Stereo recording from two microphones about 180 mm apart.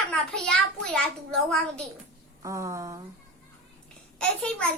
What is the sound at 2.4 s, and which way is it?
Speech, 15° right (ahead or behind).